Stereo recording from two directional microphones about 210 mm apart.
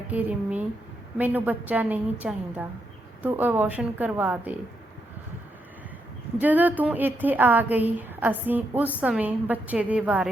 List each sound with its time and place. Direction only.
0.1 s a woman's voice: 5° right (ahead or behind)
6.4 s a woman's voice: 10° right (ahead or behind)